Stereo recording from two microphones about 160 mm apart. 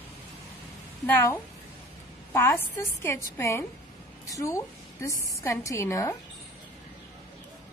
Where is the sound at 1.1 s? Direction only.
15° left (ahead or behind).